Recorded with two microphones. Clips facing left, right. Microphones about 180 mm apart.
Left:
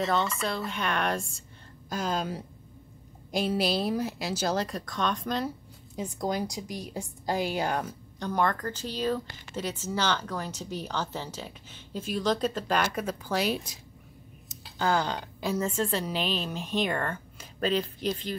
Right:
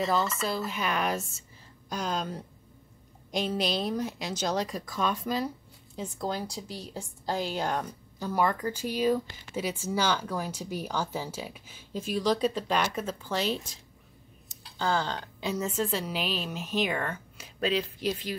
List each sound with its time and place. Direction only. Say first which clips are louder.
0.0 s speech: even; centre (ahead or behind)
5.9 s a woman's voice: left 3 dB; 15° left (ahead or behind)
8.2 s a woman's voice: even; 5° right (ahead or behind)
14.8 s a woman's voice: left 2 dB; 15° left (ahead or behind)
15.6 s speech: even; 5° right (ahead or behind)